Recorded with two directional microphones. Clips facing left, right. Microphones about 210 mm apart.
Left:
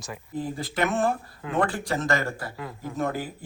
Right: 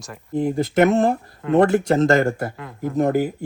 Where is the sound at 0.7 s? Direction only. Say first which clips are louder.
Right 9 dB; 40° right (ahead or behind).